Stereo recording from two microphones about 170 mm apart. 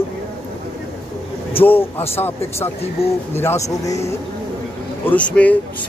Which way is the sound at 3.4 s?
15° left (ahead or behind).